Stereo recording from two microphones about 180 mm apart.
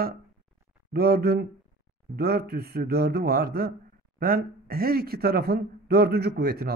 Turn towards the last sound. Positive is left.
turn(degrees=-60)  # may be behind; listen again after turning